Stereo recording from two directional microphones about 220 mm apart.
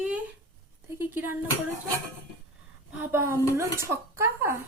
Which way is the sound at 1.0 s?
10° right (ahead or behind).